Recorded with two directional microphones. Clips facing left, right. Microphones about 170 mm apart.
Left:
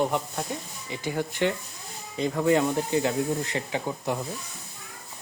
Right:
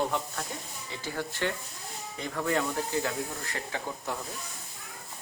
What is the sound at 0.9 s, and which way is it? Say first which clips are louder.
Speech: left 6 dB; 15° left (ahead or behind).